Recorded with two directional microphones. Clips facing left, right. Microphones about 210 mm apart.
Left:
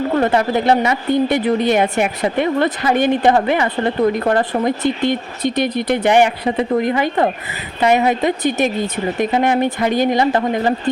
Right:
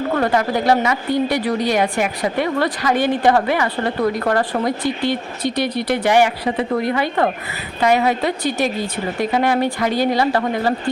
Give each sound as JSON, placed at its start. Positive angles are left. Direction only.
{"t": 0.2, "sound": "a woman's voice", "side_deg": 25}